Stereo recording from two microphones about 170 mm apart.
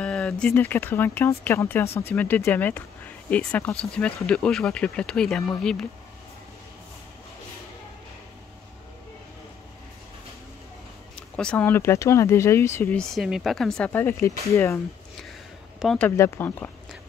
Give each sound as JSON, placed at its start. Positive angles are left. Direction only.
{"t": 0.0, "sound": "speech", "side_deg": 5}
{"t": 11.1, "sound": "speech", "side_deg": 5}
{"t": 13.1, "sound": "speech", "side_deg": 0}
{"t": 15.8, "sound": "speech", "side_deg": 5}
{"t": 16.2, "sound": "speech", "side_deg": 15}